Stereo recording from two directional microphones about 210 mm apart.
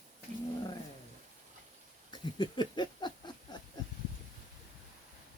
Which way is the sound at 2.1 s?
20° left (ahead or behind).